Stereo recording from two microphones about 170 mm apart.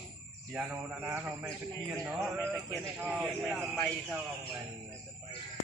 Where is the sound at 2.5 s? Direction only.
5° left (ahead or behind).